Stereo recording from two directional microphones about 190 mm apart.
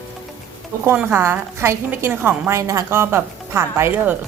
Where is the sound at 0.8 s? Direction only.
10° right (ahead or behind).